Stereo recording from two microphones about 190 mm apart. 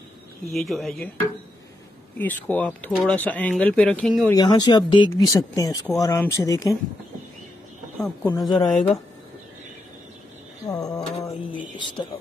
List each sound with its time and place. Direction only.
0.5 s speech: centre (ahead or behind)
2.1 s speech: 10° left (ahead or behind)
4.3 s speech: 20° left (ahead or behind)
8.0 s speech: 10° left (ahead or behind)
10.7 s speech: 20° left (ahead or behind)